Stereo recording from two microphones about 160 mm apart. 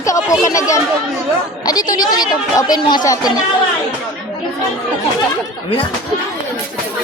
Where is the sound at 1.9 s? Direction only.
25° left (ahead or behind).